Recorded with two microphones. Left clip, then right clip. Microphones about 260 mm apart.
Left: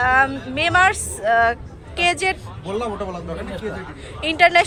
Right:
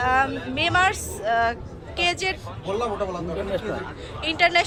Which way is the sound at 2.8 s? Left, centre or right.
Right.